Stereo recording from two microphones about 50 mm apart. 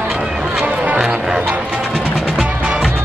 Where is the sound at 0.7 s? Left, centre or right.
Right.